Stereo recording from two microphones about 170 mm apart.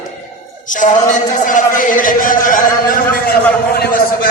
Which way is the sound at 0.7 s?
50° left (ahead or behind).